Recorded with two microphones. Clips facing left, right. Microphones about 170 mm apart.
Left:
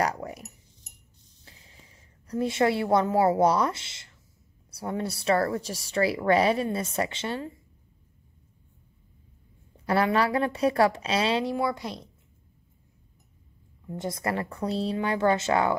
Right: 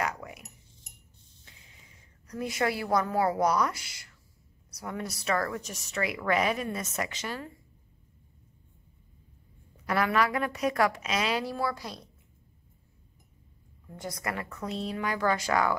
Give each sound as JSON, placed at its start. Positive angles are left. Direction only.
{"t": 0.0, "sound": "a sound", "side_deg": 35}
{"t": 1.4, "sound": "a woman's voice", "side_deg": 35}
{"t": 9.8, "sound": "a woman's voice", "side_deg": 30}
{"t": 13.8, "sound": "a woman's voice", "side_deg": 25}